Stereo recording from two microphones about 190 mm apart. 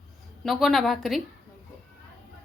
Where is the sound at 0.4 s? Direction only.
Centre (ahead or behind).